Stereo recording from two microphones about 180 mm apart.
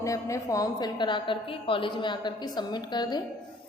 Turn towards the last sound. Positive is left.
turn(degrees=25)  # may be behind; listen again after turning